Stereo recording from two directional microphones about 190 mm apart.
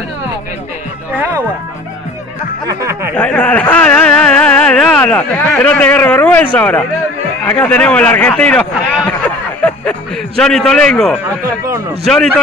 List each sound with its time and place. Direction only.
2.8 s speech: 15° right (ahead or behind)
3.2 s a sound: 5° left (ahead or behind)
6.5 s a man's voice: 5° left (ahead or behind)